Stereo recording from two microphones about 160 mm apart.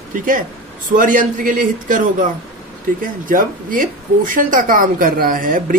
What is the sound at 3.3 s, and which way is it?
Speech, 55° right (ahead or behind).